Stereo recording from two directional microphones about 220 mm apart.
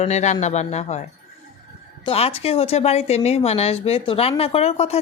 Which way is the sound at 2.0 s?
25° left (ahead or behind).